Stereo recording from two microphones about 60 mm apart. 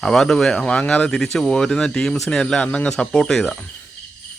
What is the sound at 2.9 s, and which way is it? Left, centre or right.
Speech, centre.